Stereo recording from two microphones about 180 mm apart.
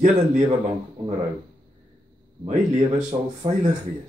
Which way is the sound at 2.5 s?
40° right (ahead or behind).